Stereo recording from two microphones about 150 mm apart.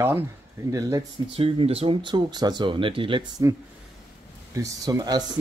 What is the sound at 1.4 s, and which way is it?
Speech, 40° right (ahead or behind).